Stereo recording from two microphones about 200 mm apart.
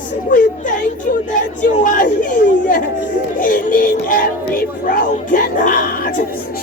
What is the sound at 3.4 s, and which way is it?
Speech, 45° left (ahead or behind).